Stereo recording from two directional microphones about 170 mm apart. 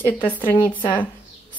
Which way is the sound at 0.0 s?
10° left (ahead or behind).